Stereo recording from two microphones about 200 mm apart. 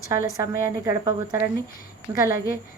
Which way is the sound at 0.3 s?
15° right (ahead or behind).